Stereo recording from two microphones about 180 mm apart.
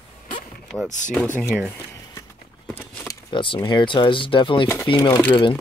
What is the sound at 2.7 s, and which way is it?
Walk, 5° left (ahead or behind).